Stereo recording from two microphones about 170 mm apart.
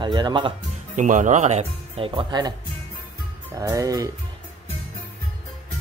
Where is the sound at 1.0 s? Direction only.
50° right (ahead or behind); by 2.5 s 25° right (ahead or behind).